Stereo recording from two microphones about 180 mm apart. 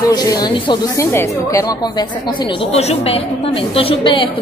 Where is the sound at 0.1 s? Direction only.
20° left (ahead or behind).